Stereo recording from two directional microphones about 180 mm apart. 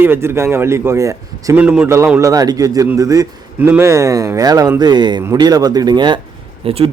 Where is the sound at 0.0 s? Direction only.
15° right (ahead or behind).